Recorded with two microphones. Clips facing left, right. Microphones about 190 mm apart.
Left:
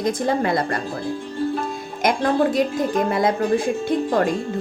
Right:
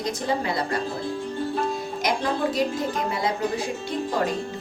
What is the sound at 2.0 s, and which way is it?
Speech, 50° left (ahead or behind).